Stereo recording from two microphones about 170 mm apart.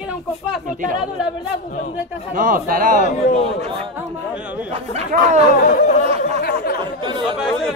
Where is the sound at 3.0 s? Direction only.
45° left (ahead or behind).